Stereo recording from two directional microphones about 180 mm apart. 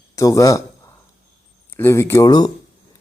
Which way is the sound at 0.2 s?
20° left (ahead or behind).